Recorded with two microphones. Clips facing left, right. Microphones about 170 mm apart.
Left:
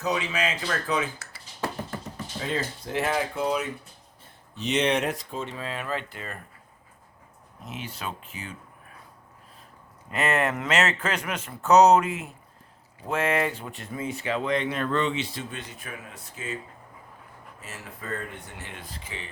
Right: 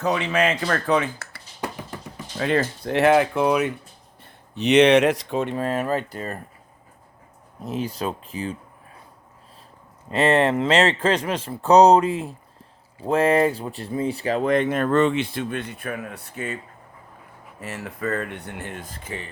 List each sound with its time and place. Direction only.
0.0 s speech: 55° right (ahead or behind)
2.4 s speech: 65° right (ahead or behind)
5.5 s speech: 45° right (ahead or behind)
7.6 s speech: 35° right (ahead or behind)
10.1 s speech: 30° right (ahead or behind); by 16.6 s 60° right (ahead or behind)
17.6 s speech: 70° right (ahead or behind)
18.7 s speech: 45° right (ahead or behind)